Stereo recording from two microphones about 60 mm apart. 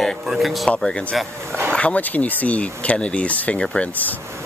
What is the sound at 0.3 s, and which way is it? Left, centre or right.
Speech, centre.